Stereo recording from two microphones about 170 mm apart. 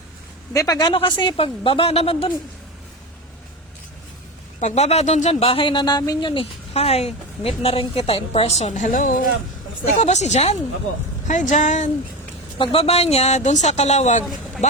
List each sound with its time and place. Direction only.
0.5 s speech: 20° left (ahead or behind)
4.6 s speech: 40° left (ahead or behind)
12.5 s speech: 30° left (ahead or behind)